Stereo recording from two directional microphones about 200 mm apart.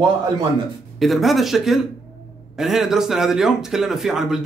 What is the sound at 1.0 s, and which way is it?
Speech, centre (ahead or behind).